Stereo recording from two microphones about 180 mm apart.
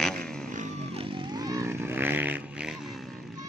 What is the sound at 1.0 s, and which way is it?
Fart, 25° right (ahead or behind).